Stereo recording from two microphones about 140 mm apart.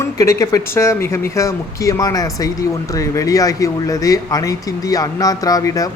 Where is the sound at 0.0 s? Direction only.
20° left (ahead or behind).